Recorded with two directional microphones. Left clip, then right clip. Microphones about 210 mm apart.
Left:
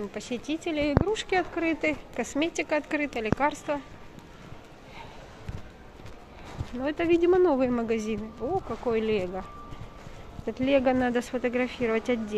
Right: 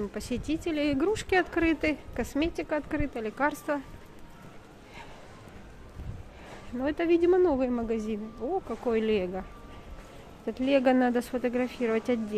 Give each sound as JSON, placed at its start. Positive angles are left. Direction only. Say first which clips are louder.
{"t": 0.1, "sound": "speech", "louder": "even", "side_deg": -30}
{"t": 2.1, "sound": "speech", "louder": "left 2 dB", "side_deg": -20}
{"t": 3.4, "sound": "speech", "louder": "right 2 dB", "side_deg": -25}
{"t": 6.8, "sound": "speech", "louder": "left 1 dB", "side_deg": -20}
{"t": 8.8, "sound": "speech", "louder": "even", "side_deg": -25}